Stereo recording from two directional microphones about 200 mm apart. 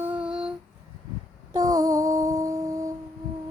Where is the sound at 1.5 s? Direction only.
15° right (ahead or behind).